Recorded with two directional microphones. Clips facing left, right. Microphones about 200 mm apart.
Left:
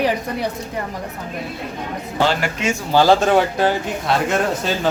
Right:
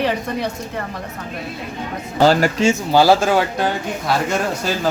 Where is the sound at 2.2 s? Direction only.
40° right (ahead or behind).